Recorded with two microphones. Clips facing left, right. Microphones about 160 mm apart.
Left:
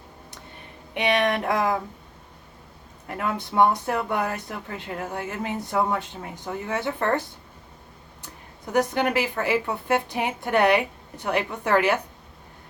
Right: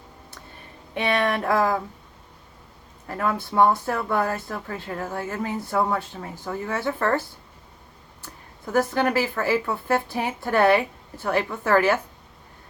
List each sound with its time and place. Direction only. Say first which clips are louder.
0.9 s speech: left 1 dB; 20° left (ahead or behind)
3.3 s speech: even; 20° left (ahead or behind)